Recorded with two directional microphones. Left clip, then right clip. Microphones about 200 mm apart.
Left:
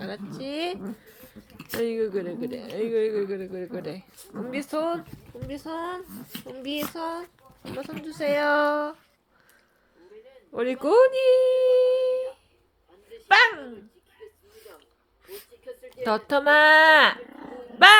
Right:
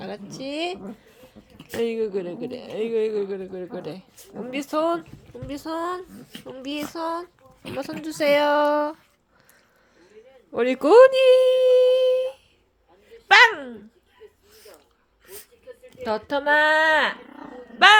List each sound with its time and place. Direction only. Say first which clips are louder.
0.0 s speech: right 2 dB; 10° right (ahead or behind)
8.0 s speech: right 6 dB; 30° right (ahead or behind)
8.4 s speech: right 2 dB; 5° right (ahead or behind)
10.5 s speech: right 6 dB; 20° right (ahead or behind)
16.0 s a woman's voice: left 1 dB; 10° left (ahead or behind)